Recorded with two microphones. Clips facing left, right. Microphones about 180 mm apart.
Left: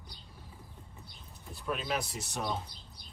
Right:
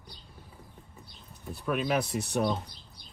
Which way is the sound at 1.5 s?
60° right (ahead or behind).